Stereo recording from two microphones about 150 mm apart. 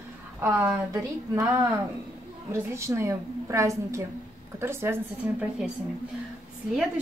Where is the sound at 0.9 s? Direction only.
20° right (ahead or behind).